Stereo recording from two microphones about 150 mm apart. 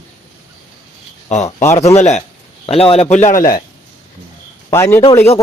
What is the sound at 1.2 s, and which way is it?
Speech, 45° left (ahead or behind).